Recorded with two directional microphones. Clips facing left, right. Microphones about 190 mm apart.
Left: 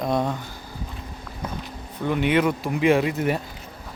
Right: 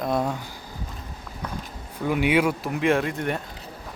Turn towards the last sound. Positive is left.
turn(degrees=5)  # may be behind; listen again after turning